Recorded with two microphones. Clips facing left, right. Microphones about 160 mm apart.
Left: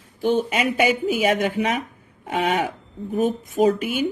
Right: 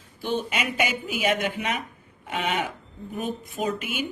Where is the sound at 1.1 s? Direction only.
35° left (ahead or behind).